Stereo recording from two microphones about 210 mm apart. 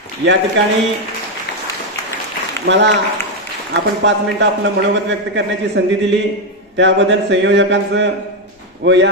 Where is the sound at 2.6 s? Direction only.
55° right (ahead or behind).